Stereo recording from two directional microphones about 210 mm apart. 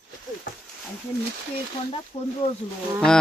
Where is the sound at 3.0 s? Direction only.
5° left (ahead or behind).